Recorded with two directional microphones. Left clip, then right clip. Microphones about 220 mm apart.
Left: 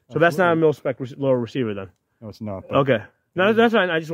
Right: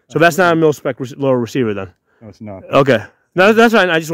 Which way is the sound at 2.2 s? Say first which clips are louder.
Even; 20° left (ahead or behind).